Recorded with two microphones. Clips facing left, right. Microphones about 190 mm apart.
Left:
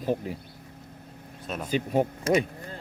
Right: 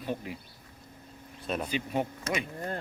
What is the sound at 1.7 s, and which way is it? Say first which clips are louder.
Speech: left 9 dB; 45° left (ahead or behind).